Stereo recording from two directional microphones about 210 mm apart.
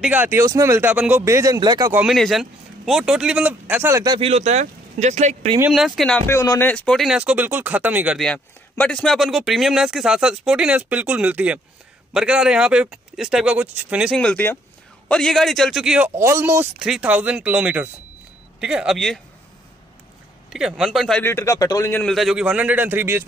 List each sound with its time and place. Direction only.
0.0 s speech: 10° right (ahead or behind)
2.0 s speech: centre (ahead or behind); by 4.3 s 20° right (ahead or behind)
4.3 s speech: 30° right (ahead or behind)
5.7 s speech: centre (ahead or behind)
20.5 s speech: centre (ahead or behind)